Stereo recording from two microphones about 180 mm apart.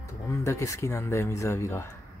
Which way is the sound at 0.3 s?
15° left (ahead or behind).